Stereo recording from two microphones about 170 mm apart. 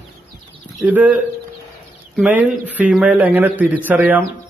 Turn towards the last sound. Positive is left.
turn(degrees=-10)  # may be behind; listen again after turning